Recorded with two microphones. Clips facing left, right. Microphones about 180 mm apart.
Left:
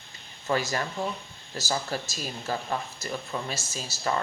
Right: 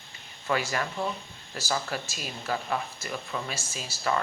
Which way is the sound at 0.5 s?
40° left (ahead or behind).